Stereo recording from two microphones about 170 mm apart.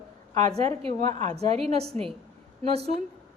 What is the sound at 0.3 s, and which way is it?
A woman's voice, 40° right (ahead or behind).